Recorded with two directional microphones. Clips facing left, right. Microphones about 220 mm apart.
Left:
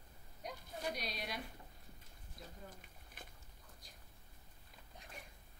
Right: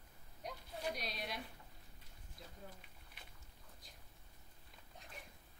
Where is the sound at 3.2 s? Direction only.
45° left (ahead or behind).